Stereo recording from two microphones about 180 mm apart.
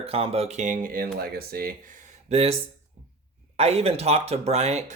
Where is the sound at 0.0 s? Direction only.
35° right (ahead or behind).